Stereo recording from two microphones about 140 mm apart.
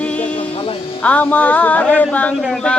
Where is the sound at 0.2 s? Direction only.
40° left (ahead or behind).